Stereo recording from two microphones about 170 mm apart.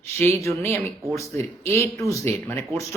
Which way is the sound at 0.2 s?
15° left (ahead or behind).